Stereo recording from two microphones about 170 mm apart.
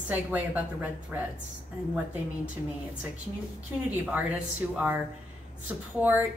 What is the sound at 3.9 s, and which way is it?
A woman's voice, 10° right (ahead or behind).